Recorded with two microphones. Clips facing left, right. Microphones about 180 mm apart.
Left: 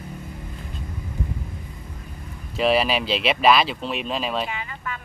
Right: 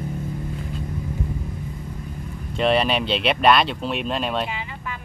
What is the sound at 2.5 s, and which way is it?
Speech, 5° left (ahead or behind).